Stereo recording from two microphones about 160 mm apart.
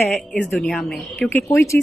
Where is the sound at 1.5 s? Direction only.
15° left (ahead or behind).